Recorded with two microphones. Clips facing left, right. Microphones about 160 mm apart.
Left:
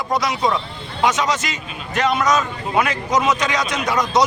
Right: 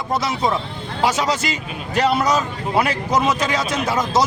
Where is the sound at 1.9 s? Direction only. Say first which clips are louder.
Even; 35° right (ahead or behind).